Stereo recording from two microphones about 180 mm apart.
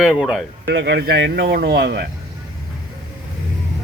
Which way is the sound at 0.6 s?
70° right (ahead or behind).